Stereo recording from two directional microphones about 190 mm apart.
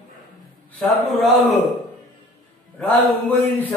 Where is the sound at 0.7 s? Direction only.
5° left (ahead or behind).